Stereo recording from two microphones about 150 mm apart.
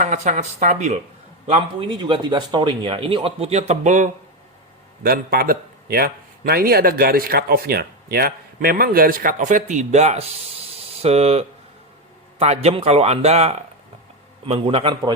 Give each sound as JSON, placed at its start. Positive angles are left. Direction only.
{"t": 0.0, "sound": "speech", "side_deg": -55}
{"t": 1.5, "sound": "speech", "side_deg": -40}
{"t": 5.0, "sound": "a man's voice", "side_deg": -90}
{"t": 10.8, "sound": "a sound", "side_deg": -45}
{"t": 12.4, "sound": "speech", "side_deg": -45}